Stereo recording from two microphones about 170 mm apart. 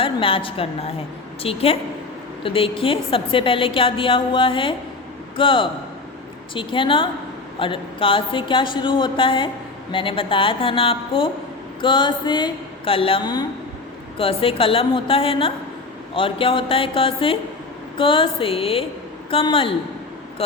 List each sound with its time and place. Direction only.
0.0 s a woman's voice: 30° left (ahead or behind)